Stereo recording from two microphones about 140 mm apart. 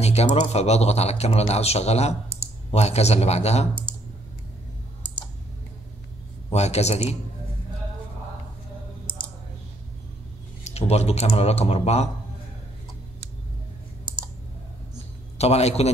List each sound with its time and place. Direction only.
0.0 s speech: 50° left (ahead or behind)
6.5 s speech: 50° left (ahead or behind)
10.6 s speech: 50° left (ahead or behind)
15.3 s a man's voice: 50° left (ahead or behind)